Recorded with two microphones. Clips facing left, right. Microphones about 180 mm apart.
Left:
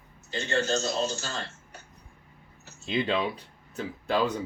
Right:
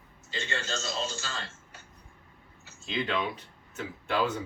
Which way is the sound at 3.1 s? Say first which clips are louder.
Left 3 dB; 35° left (ahead or behind).